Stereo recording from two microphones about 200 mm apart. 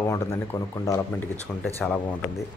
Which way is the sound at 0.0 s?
15° left (ahead or behind).